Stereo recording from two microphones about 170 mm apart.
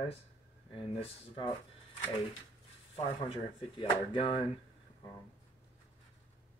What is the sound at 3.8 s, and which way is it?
Speech, 30° left (ahead or behind).